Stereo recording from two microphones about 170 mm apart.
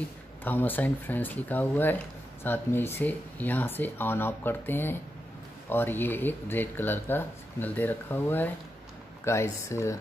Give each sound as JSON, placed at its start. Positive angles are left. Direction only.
{"t": 0.4, "sound": "speech", "side_deg": 10}